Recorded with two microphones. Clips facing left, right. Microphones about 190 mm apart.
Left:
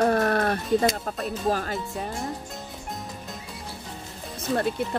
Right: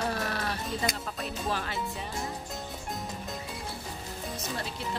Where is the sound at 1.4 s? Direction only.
40° left (ahead or behind).